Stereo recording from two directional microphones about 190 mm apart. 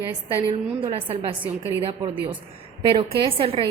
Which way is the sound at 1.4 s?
15° right (ahead or behind).